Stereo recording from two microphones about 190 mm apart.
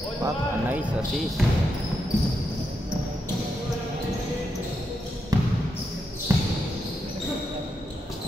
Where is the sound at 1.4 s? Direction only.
Centre (ahead or behind).